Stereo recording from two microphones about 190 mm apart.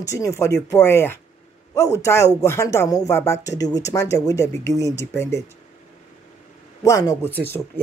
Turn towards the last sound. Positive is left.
turn(degrees=10)  # may be behind; listen again after turning